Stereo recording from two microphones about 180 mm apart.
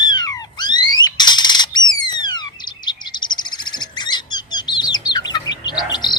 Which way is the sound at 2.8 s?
25° left (ahead or behind).